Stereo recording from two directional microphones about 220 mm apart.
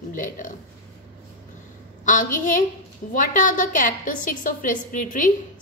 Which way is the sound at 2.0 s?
35° left (ahead or behind).